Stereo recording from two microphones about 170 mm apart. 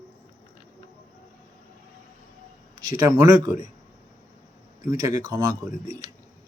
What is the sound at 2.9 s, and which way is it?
Speech, 20° right (ahead or behind).